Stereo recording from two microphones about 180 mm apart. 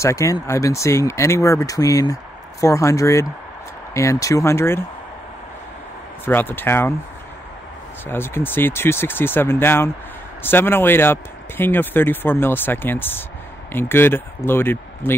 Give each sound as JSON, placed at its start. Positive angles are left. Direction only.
{"t": 0.0, "sound": "speech", "side_deg": 15}
{"t": 6.2, "sound": "speech", "side_deg": 10}
{"t": 8.1, "sound": "speech", "side_deg": 10}